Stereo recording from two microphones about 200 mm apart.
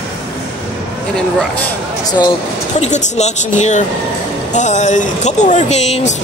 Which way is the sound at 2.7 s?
35° left (ahead or behind).